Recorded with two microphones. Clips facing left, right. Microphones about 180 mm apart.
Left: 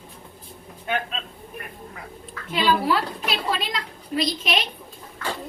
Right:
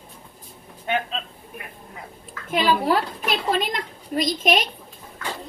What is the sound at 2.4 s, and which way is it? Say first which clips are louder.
A woman's voice: right 1 dB; 45° right (ahead or behind).